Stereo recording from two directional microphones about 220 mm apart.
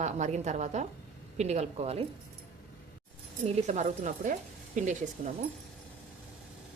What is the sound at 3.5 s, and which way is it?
A woman's voice, 30° right (ahead or behind).